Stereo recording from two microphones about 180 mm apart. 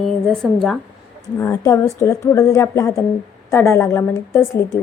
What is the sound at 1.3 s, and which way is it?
Speech, 20° left (ahead or behind).